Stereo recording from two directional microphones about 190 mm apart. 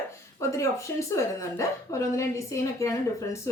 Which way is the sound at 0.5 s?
15° left (ahead or behind).